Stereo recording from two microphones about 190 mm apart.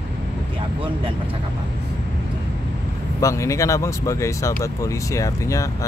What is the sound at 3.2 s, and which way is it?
Speech, 15° left (ahead or behind).